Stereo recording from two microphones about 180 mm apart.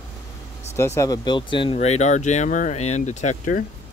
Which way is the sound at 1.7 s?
40° left (ahead or behind).